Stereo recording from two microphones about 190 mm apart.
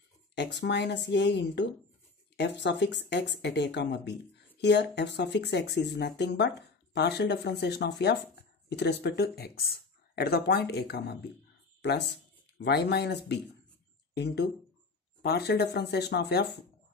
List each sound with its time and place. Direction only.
0.3 s speech: 65° left (ahead or behind)